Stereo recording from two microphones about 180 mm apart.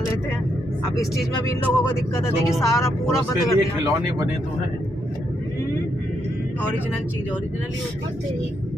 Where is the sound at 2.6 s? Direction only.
15° left (ahead or behind).